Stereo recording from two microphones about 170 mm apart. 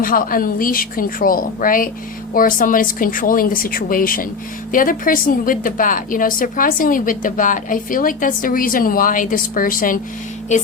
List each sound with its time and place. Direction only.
0.0 s a woman's voice: 55° left (ahead or behind)